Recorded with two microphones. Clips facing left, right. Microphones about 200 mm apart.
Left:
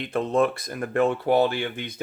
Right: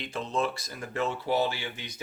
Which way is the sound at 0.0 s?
55° left (ahead or behind).